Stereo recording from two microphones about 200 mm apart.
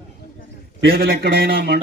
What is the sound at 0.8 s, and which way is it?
A man's voice, 55° right (ahead or behind).